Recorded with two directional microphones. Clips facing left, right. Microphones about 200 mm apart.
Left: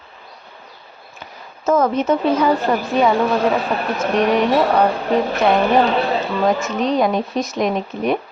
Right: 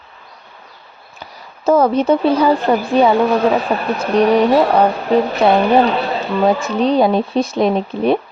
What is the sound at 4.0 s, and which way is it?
Speech, 35° right (ahead or behind).